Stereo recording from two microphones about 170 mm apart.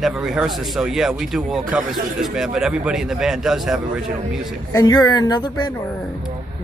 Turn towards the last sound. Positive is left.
turn(degrees=25)  # may be behind; listen again after turning